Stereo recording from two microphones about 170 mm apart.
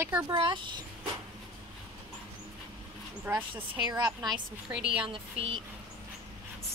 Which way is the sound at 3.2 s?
10° right (ahead or behind).